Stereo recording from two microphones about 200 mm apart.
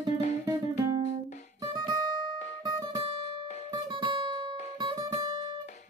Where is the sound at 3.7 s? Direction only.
20° right (ahead or behind).